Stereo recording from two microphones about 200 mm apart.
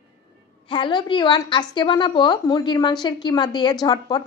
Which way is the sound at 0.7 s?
25° left (ahead or behind).